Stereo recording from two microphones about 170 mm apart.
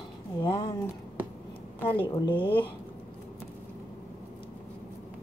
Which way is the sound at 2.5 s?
30° left (ahead or behind).